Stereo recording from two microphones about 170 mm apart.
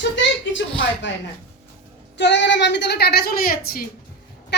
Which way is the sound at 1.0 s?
90° left.